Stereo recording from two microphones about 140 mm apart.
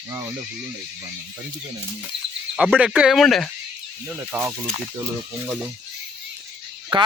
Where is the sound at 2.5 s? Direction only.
5° right (ahead or behind).